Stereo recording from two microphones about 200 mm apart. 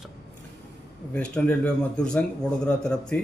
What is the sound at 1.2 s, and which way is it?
Speech, 5° left (ahead or behind).